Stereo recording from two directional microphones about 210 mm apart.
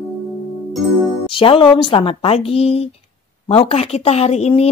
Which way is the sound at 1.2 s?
25° left (ahead or behind).